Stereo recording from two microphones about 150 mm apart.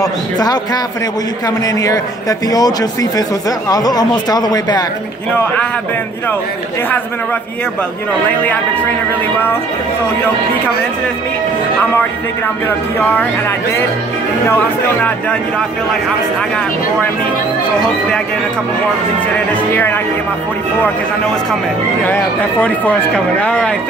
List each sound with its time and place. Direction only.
0.0 s a man's voice: 25° left (ahead or behind)
1.8 s a man's voice: 25° left (ahead or behind)
12.6 s speech: 10° left (ahead or behind)
19.7 s speech: 15° left (ahead or behind)
22.0 s speech: 10° left (ahead or behind)